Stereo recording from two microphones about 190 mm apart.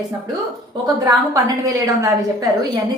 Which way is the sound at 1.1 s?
15° right (ahead or behind).